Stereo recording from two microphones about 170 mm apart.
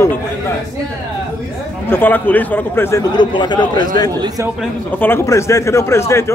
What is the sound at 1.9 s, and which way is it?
Speech, 10° left (ahead or behind).